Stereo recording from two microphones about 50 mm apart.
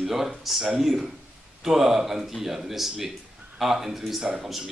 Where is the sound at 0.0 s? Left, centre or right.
Centre.